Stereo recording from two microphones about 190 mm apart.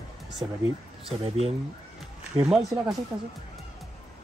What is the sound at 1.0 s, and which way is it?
Speech, 30° right (ahead or behind).